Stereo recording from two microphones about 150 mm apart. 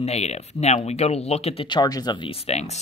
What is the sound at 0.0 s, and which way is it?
Speech, 45° left (ahead or behind).